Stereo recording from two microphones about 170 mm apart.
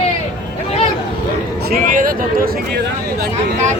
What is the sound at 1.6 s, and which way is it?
Speech, 55° right (ahead or behind).